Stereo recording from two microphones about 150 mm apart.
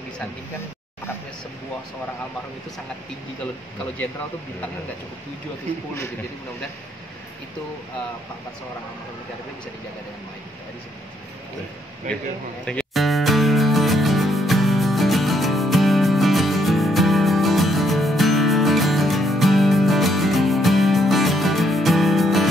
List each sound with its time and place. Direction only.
12.6 s music: 5° left (ahead or behind)